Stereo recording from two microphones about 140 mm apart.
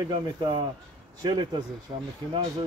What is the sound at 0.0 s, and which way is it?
Speech, 30° right (ahead or behind).